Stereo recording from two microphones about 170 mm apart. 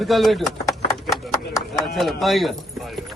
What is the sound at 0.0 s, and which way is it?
Speech, centre (ahead or behind).